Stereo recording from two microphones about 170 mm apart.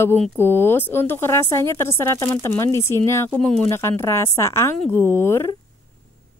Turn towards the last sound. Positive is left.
turn(degrees=15)  # may be behind; listen again after turning